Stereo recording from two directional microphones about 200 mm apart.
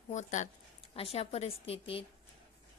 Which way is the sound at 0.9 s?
30° left (ahead or behind).